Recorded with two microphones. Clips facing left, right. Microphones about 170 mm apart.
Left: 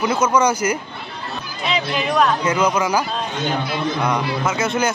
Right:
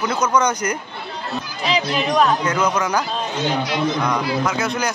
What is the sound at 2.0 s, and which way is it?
Speech, 5° left (ahead or behind).